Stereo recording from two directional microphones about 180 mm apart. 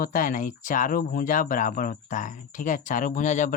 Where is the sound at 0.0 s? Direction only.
50° left (ahead or behind).